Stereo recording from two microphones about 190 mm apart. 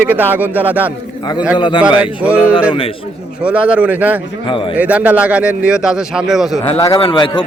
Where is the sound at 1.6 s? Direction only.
25° left (ahead or behind).